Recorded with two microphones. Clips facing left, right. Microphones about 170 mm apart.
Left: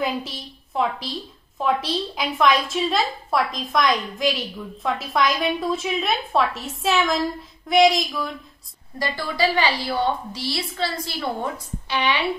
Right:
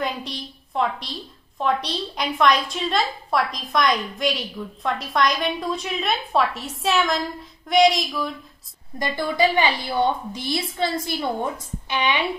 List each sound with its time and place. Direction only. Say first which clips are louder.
0.0 s a woman's voice: left 2 dB; 5° left (ahead or behind)
8.9 s a woman's voice: right 3 dB; 20° right (ahead or behind)